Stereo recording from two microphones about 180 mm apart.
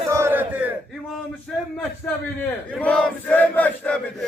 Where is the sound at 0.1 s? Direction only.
15° right (ahead or behind).